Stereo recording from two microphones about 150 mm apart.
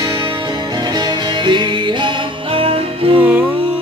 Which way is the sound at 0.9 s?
30° right (ahead or behind).